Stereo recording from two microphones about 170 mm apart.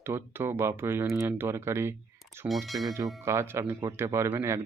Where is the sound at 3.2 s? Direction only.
15° right (ahead or behind).